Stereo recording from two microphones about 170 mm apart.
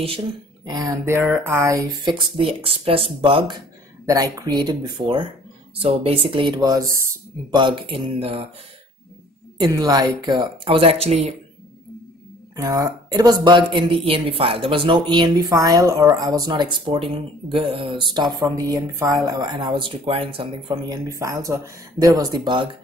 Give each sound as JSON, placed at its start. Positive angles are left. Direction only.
{"t": 0.7, "sound": "speech", "side_deg": -20}
{"t": 7.5, "sound": "speech", "side_deg": -30}
{"t": 9.6, "sound": "speech", "side_deg": -25}
{"t": 12.5, "sound": "speech", "side_deg": -20}